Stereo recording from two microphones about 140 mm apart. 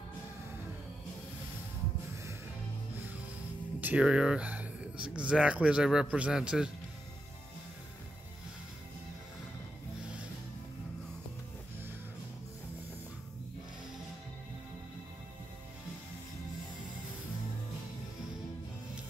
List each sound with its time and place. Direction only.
3.8 s speech: 10° right (ahead or behind)